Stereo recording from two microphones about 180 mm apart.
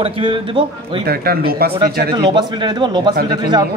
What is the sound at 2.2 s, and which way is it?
A man's voice, 25° right (ahead or behind).